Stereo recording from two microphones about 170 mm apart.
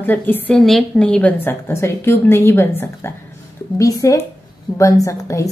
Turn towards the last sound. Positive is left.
turn(degrees=20)  # may be behind; listen again after turning